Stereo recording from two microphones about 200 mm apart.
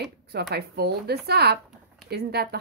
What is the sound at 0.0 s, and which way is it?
Speech, 55° right (ahead or behind).